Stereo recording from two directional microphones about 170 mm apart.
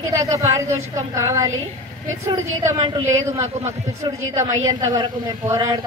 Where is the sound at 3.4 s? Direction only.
40° right (ahead or behind).